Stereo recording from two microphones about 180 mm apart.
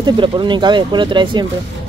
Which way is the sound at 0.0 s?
25° right (ahead or behind).